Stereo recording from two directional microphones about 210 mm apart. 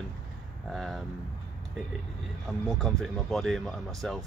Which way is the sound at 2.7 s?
Centre (ahead or behind).